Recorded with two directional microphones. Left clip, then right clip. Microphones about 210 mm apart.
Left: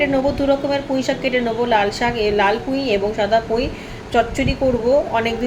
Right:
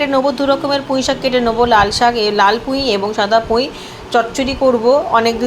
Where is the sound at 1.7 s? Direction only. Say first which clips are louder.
Right 5 dB; 60° right (ahead or behind).